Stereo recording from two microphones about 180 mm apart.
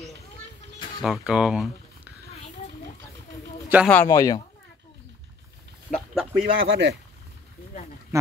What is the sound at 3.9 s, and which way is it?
Speech, 15° left (ahead or behind).